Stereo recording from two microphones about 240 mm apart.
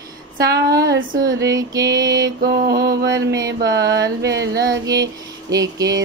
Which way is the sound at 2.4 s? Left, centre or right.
Right.